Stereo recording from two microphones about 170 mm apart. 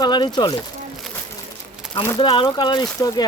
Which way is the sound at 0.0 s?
25° left (ahead or behind).